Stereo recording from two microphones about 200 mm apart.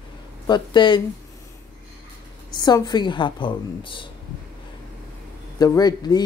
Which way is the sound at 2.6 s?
20° left (ahead or behind).